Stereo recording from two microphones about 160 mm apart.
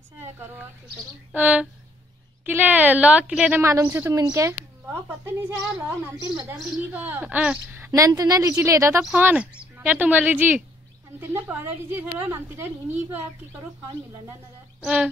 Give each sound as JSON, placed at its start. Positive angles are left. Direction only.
{"t": 0.2, "sound": "a sound", "side_deg": -15}
{"t": 1.3, "sound": "a woman's voice", "side_deg": -10}
{"t": 6.3, "sound": "a woman's voice", "side_deg": -5}
{"t": 9.0, "sound": "a woman's voice", "side_deg": -10}
{"t": 14.8, "sound": "speech", "side_deg": -5}